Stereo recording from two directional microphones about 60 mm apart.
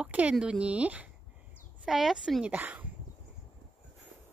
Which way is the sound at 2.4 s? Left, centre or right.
Right.